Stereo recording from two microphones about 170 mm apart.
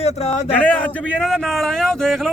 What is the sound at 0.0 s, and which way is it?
Speech, 40° left (ahead or behind).